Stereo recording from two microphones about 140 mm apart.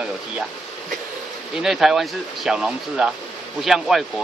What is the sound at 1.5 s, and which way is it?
Speech, centre (ahead or behind).